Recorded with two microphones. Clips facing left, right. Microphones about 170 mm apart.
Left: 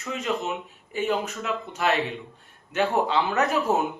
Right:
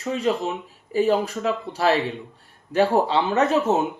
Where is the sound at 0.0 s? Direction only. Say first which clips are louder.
Right 5 dB; 30° right (ahead or behind).